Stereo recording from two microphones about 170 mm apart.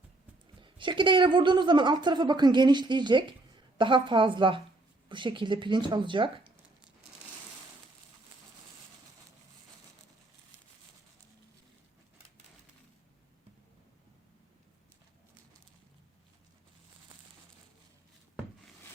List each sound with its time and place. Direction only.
0.6 s a woman's voice: 30° right (ahead or behind)